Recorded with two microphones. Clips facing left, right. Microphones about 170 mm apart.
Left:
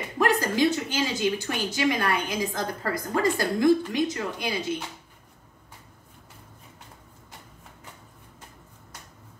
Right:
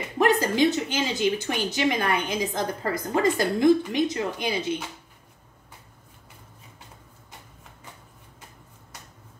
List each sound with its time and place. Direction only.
0.2 s a woman's voice: 20° right (ahead or behind)